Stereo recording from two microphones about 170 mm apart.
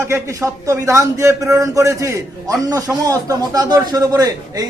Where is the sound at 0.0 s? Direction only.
15° right (ahead or behind).